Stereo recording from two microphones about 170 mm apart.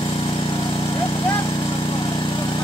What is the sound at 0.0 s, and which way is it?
Vehicle, 30° left (ahead or behind).